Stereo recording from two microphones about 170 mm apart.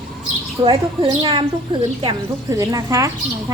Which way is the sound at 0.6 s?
30° right (ahead or behind).